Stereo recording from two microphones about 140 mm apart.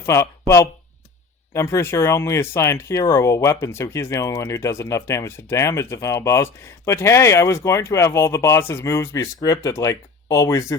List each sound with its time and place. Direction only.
0.0 s speech: 20° left (ahead or behind)